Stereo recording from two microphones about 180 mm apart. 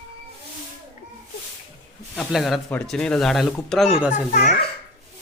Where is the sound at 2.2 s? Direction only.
Centre (ahead or behind).